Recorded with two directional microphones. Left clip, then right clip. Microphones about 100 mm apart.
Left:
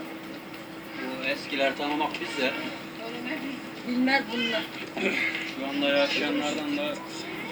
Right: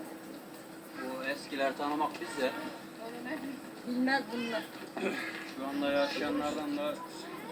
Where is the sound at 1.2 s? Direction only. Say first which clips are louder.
Left 7 dB; 25° left (ahead or behind).